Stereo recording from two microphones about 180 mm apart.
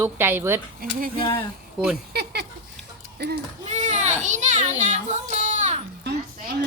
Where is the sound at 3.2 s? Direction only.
70° right (ahead or behind).